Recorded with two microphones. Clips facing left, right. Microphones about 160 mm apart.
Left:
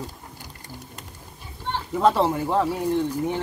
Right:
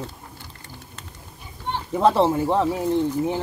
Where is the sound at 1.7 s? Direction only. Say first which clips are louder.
Right 1 dB; 20° right (ahead or behind).